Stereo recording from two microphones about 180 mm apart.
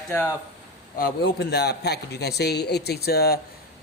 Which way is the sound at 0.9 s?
60° left (ahead or behind).